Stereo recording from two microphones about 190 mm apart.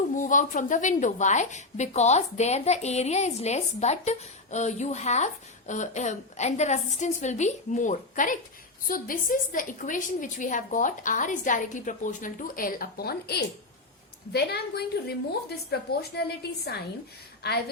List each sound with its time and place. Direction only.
0.1 s a woman's voice: 40° left (ahead or behind)
17.4 s a woman's voice: 60° left (ahead or behind)